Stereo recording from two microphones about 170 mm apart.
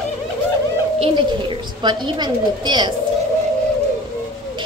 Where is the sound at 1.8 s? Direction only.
25° right (ahead or behind).